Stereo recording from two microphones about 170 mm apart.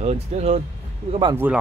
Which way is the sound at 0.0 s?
40° right (ahead or behind).